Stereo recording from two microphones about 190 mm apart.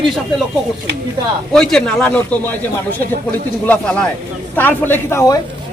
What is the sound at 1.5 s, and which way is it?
A man's voice, 5° left (ahead or behind).